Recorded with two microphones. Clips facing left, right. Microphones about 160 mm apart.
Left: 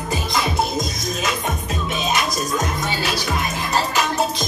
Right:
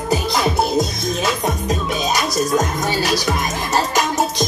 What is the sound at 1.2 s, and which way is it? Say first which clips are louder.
Music: right 4 dB; 35° right (ahead or behind).